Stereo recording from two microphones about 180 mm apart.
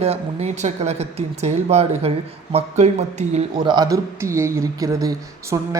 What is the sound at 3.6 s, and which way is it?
Speech, 20° right (ahead or behind).